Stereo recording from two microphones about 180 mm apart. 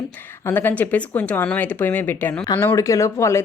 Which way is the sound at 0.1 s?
10° left (ahead or behind).